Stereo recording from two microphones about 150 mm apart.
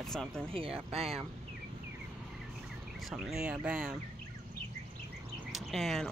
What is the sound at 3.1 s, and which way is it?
Speech, 5° right (ahead or behind).